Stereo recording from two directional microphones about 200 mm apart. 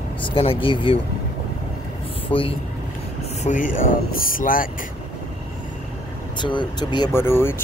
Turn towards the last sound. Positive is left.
turn(degrees=10)  # may be behind; listen again after turning